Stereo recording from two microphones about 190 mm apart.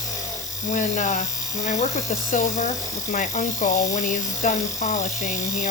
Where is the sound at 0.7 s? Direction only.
40° left (ahead or behind).